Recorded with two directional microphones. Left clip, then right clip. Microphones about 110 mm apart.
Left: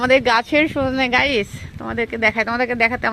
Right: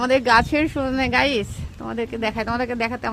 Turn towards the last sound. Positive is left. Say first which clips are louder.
# left 6 dB
turn(degrees=15)  # may be behind; listen again after turning